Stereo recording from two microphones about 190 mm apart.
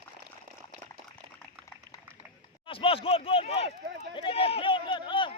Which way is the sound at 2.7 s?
30° left (ahead or behind).